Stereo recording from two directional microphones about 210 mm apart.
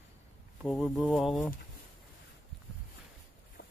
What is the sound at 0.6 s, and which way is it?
Speech, centre (ahead or behind).